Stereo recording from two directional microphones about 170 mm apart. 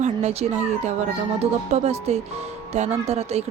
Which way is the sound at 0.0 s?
40° right (ahead or behind).